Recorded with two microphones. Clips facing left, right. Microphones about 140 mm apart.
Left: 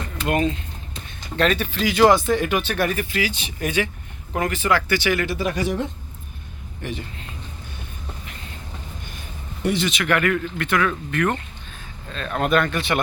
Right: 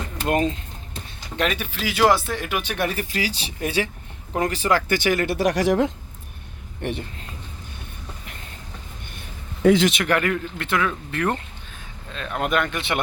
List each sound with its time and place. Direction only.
0.3 s speech: 35° right (ahead or behind)
1.4 s speech: 10° right (ahead or behind)
2.6 s speech: 20° right (ahead or behind)
2.9 s speech: 35° right (ahead or behind)
5.4 s speech: 85° right
10.0 s speech: 30° right (ahead or behind)
12.1 s speech: 15° right (ahead or behind)